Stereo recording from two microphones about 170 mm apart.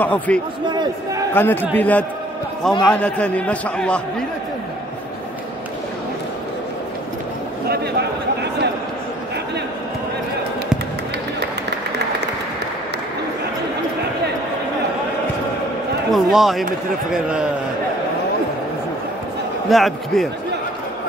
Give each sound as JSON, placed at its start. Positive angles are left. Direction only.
{"t": 0.0, "sound": "a man's voice", "side_deg": 10}
{"t": 0.7, "sound": "speech", "side_deg": -25}
{"t": 1.3, "sound": "a man's voice", "side_deg": 10}
{"t": 7.6, "sound": "a sound", "side_deg": -70}
{"t": 16.1, "sound": "speech", "side_deg": 0}
{"t": 19.7, "sound": "speech", "side_deg": 0}